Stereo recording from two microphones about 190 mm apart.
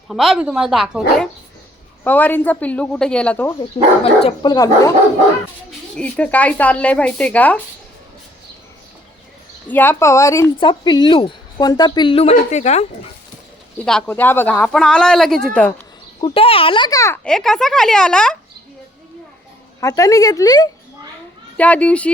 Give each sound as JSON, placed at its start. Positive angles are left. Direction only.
{"t": 0.1, "sound": "speech", "side_deg": 0}
{"t": 2.0, "sound": "speech", "side_deg": 10}
{"t": 4.0, "sound": "speech", "side_deg": 30}
{"t": 4.5, "sound": "speech", "side_deg": 20}
{"t": 5.9, "sound": "speech", "side_deg": 5}
{"t": 9.6, "sound": "speech", "side_deg": 10}
{"t": 13.8, "sound": "speech", "side_deg": 5}
{"t": 16.2, "sound": "a child's voice", "side_deg": 30}
{"t": 17.2, "sound": "speech", "side_deg": 5}
{"t": 19.8, "sound": "a child's voice", "side_deg": 20}
{"t": 21.6, "sound": "speech", "side_deg": 5}